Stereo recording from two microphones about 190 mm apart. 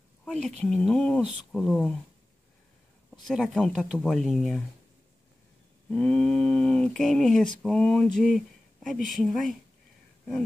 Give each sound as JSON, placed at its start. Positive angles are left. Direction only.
{"t": 0.2, "sound": "a sound", "side_deg": 5}
{"t": 0.6, "sound": "speech", "side_deg": 5}
{"t": 3.1, "sound": "speech", "side_deg": 0}
{"t": 5.9, "sound": "speech", "side_deg": 5}